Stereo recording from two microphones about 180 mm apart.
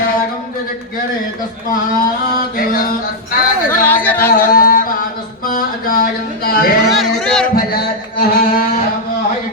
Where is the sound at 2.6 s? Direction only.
50° left (ahead or behind).